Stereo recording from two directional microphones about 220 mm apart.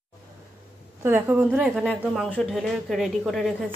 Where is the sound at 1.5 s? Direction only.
Centre (ahead or behind).